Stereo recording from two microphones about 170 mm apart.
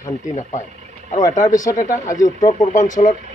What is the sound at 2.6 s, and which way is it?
Speech, 45° left (ahead or behind).